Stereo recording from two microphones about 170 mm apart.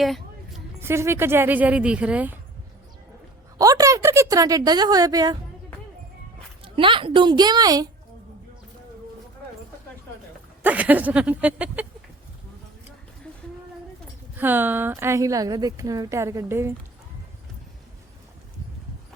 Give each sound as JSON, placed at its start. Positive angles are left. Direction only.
{"t": 0.0, "sound": "a sound", "side_deg": 0}
{"t": 0.8, "sound": "a woman's voice", "side_deg": -15}
{"t": 3.6, "sound": "a woman's voice", "side_deg": -20}
{"t": 6.7, "sound": "a woman's voice", "side_deg": -30}
{"t": 10.6, "sound": "a woman's voice", "side_deg": -10}
{"t": 14.3, "sound": "a woman's voice", "side_deg": -10}